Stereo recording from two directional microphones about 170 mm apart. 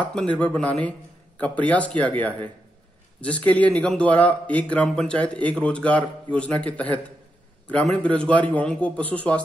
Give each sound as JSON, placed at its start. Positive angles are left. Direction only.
{"t": 0.0, "sound": "a man's voice", "side_deg": 5}